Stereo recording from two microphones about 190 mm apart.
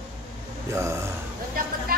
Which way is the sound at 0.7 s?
15° right (ahead or behind).